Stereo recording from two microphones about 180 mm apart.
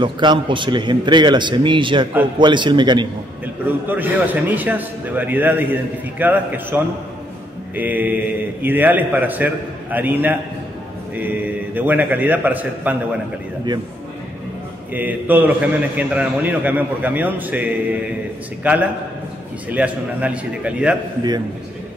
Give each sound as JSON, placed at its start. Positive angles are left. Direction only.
{"t": 0.0, "sound": "a man's voice", "side_deg": -25}
{"t": 3.6, "sound": "a man's voice", "side_deg": -10}
{"t": 15.0, "sound": "a man's voice", "side_deg": -10}